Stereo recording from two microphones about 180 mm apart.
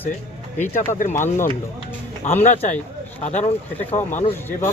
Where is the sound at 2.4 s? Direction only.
35° left (ahead or behind).